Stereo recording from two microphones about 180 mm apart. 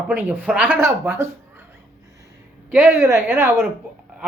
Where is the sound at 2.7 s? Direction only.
10° right (ahead or behind).